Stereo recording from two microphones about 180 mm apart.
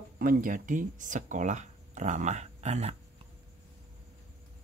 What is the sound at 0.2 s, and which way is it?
Speech, 50° right (ahead or behind).